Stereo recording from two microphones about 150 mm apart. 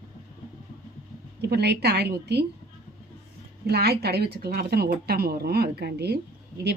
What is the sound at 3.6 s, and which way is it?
Speech, 90° right.